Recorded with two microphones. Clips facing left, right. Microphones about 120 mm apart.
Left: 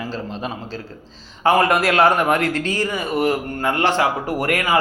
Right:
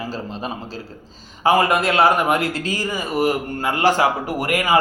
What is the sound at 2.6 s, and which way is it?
Speech, 5° right (ahead or behind).